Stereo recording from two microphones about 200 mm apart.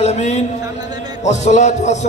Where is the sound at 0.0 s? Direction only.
35° left (ahead or behind).